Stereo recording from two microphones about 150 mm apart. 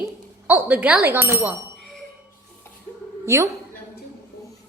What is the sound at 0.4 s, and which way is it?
Speech, 10° right (ahead or behind).